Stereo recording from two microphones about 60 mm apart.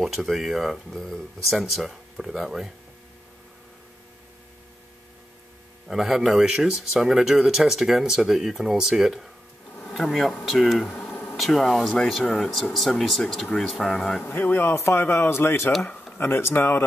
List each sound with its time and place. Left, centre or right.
0.0 s speech: centre
5.9 s speech: centre
10.4 s speech: centre
11.1 s a sound: left
11.3 s speech: centre
14.2 s speech: left
14.7 s a man's voice: left